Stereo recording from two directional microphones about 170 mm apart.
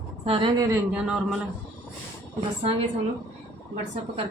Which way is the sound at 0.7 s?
5° right (ahead or behind).